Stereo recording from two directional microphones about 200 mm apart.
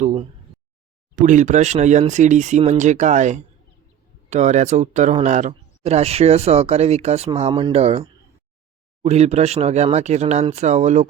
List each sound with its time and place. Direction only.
0.0 s speech: 30° right (ahead or behind)
9.0 s speech: 35° right (ahead or behind)